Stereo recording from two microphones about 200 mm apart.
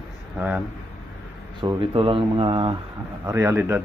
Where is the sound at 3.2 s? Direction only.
15° right (ahead or behind).